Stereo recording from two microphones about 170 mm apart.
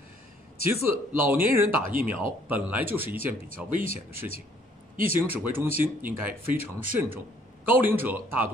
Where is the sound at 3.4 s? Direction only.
55° right (ahead or behind).